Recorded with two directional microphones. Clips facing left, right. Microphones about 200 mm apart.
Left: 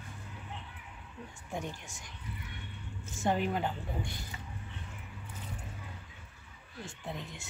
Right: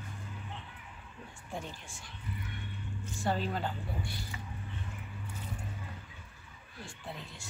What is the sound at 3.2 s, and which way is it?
Speech, 15° left (ahead or behind).